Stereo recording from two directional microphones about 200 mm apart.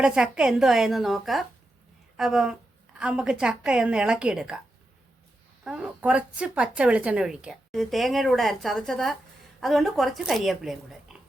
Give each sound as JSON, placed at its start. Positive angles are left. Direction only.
{"t": 0.0, "sound": "a woman's voice", "side_deg": -5}
{"t": 5.6, "sound": "a woman's voice", "side_deg": -5}